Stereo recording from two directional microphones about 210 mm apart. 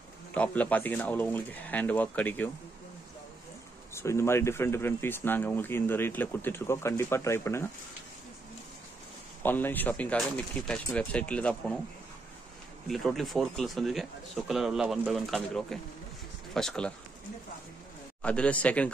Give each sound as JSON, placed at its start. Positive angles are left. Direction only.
{"t": 0.3, "sound": "speech", "side_deg": 5}
{"t": 3.9, "sound": "speech", "side_deg": 15}
{"t": 9.4, "sound": "speech", "side_deg": 10}
{"t": 12.8, "sound": "speech", "side_deg": 0}
{"t": 18.2, "sound": "speech", "side_deg": 5}